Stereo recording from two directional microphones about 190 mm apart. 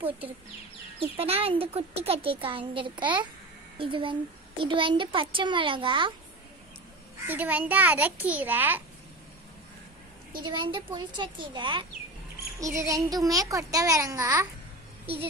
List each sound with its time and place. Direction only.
0.9 s a child's voice: 30° right (ahead or behind)
7.2 s a child's voice: 10° right (ahead or behind)
10.4 s a child's voice: 25° right (ahead or behind)